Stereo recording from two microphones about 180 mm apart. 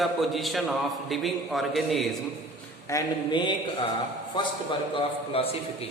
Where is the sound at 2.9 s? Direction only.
20° left (ahead or behind).